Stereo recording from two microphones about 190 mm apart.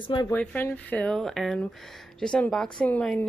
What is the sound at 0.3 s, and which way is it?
A woman's voice, 10° left (ahead or behind).